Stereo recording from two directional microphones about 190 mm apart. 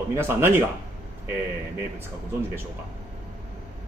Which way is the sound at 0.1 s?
15° right (ahead or behind).